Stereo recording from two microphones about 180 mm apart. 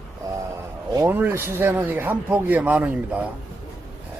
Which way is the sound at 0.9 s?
15° right (ahead or behind).